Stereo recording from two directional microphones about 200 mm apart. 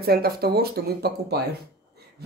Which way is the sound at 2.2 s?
55° right (ahead or behind).